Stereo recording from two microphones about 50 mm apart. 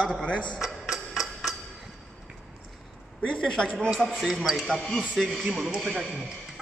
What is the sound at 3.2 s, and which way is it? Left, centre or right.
Speech, left.